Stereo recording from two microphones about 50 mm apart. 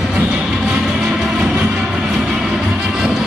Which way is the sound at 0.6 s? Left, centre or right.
Centre.